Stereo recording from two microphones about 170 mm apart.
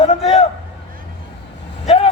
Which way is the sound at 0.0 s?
35° left (ahead or behind).